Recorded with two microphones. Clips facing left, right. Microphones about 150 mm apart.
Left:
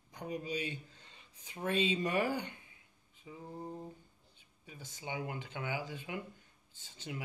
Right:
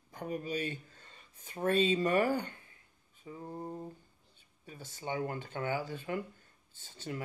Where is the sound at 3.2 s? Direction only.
45° right (ahead or behind).